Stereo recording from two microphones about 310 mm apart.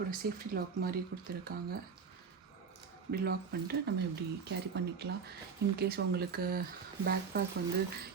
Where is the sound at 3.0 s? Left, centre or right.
Right.